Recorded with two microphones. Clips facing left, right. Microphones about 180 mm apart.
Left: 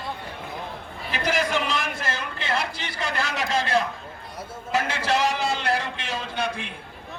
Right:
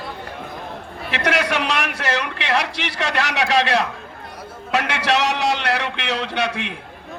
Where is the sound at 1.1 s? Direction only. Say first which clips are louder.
Right 3 dB; 75° right (ahead or behind).